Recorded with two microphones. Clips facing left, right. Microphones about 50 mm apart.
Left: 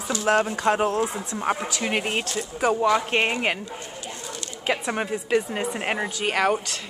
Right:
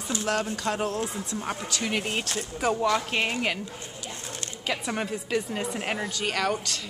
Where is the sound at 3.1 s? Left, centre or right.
Left.